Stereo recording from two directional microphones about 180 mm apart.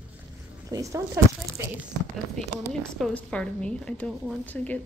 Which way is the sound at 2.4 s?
5° left (ahead or behind).